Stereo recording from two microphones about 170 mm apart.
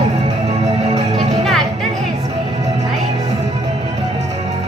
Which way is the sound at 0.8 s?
35° right (ahead or behind).